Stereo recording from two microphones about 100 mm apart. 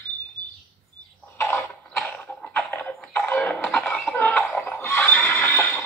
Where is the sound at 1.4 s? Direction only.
25° left (ahead or behind).